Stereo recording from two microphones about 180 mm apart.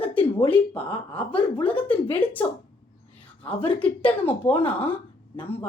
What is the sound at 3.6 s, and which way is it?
A woman's voice, 10° left (ahead or behind).